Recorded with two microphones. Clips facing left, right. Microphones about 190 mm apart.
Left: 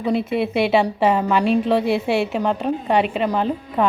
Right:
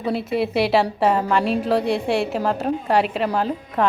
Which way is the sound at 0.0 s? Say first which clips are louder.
Left 2 dB; centre (ahead or behind).